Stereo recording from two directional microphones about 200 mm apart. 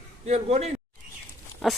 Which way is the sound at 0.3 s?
30° right (ahead or behind).